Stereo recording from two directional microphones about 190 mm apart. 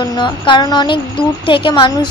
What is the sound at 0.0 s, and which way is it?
A woman's voice, 25° left (ahead or behind).